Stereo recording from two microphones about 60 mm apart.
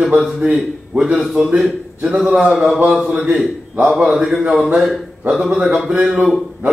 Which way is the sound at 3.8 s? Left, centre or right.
Centre.